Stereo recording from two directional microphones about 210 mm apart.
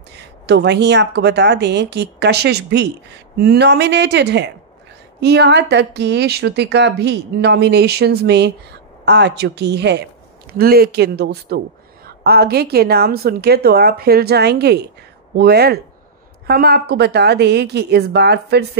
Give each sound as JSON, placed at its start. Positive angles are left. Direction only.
{"t": 0.5, "sound": "speech", "side_deg": -55}